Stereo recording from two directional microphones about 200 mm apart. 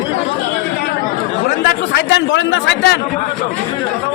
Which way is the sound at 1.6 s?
55° left (ahead or behind).